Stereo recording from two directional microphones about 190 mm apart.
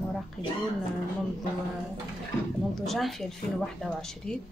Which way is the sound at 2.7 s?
Centre (ahead or behind).